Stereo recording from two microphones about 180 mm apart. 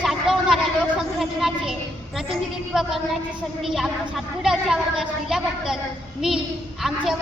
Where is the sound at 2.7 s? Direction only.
Centre (ahead or behind).